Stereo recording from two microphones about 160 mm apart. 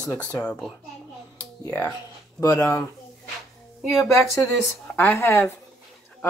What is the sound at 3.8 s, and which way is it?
Speech, centre (ahead or behind).